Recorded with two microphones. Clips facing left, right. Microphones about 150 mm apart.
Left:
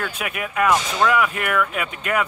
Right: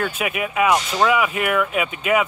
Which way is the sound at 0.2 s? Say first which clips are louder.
Even; 5° right (ahead or behind).